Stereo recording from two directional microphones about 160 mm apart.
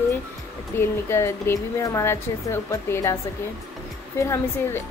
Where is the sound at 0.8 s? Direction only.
15° left (ahead or behind).